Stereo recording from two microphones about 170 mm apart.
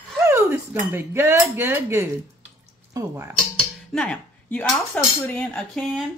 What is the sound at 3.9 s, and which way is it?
Cutlery, 5° left (ahead or behind).